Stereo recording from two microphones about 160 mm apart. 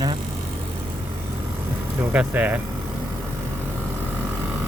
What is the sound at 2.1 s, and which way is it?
Speech, 10° right (ahead or behind).